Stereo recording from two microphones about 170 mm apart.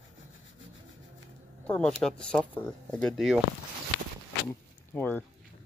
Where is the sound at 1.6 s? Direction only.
5° left (ahead or behind).